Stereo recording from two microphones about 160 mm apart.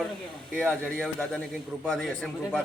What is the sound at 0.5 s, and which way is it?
A man's voice, 10° left (ahead or behind).